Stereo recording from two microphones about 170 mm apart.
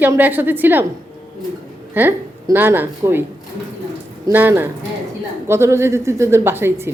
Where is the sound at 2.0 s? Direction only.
10° right (ahead or behind).